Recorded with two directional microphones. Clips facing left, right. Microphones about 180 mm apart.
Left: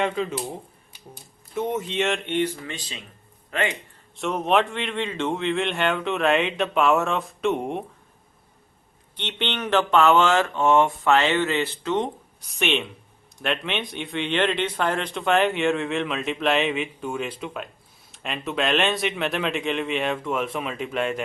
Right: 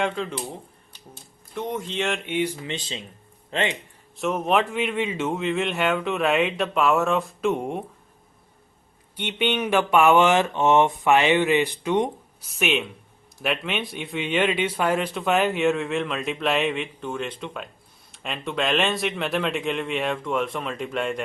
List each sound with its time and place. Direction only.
0.0 s speech: 5° left (ahead or behind)
2.6 s speech: 25° right (ahead or behind)
4.2 s speech: centre (ahead or behind)
9.1 s speech: 10° right (ahead or behind)
12.5 s speech: 5° right (ahead or behind)